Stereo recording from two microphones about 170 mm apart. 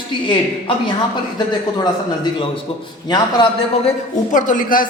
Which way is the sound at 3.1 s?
25° left (ahead or behind).